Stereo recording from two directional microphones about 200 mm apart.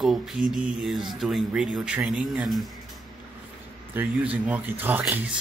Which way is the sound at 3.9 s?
10° right (ahead or behind).